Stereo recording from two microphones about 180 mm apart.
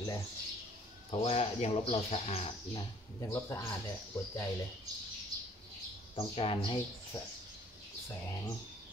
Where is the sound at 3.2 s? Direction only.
15° left (ahead or behind).